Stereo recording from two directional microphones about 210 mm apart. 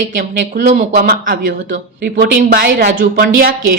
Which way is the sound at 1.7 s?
55° right (ahead or behind).